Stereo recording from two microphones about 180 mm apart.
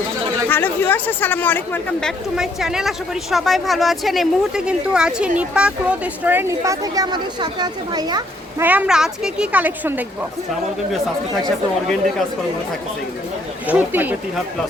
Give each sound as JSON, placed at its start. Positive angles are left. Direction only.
{"t": 0.4, "sound": "speech", "side_deg": 10}
{"t": 8.6, "sound": "a woman's voice", "side_deg": -10}
{"t": 13.7, "sound": "a woman's voice", "side_deg": -10}